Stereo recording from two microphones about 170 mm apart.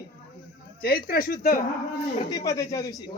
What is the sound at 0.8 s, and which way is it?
Speech, 65° left (ahead or behind).